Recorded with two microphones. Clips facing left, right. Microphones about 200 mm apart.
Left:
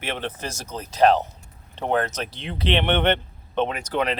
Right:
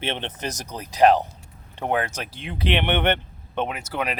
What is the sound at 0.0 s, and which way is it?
Speech, 25° right (ahead or behind).